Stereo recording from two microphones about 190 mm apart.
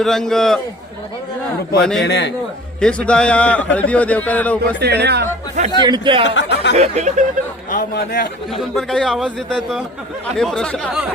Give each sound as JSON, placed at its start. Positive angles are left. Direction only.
{"t": 0.0, "sound": "a man's voice", "side_deg": 0}
{"t": 2.0, "sound": "a man's voice", "side_deg": 65}
{"t": 2.8, "sound": "a man's voice", "side_deg": 5}
{"t": 4.8, "sound": "speech", "side_deg": -60}
{"t": 5.7, "sound": "speech", "side_deg": -25}
{"t": 6.2, "sound": "speech", "side_deg": 70}
{"t": 6.7, "sound": "speech", "side_deg": -35}
{"t": 7.7, "sound": "speech", "side_deg": 50}
{"t": 8.4, "sound": "a man's voice", "side_deg": 0}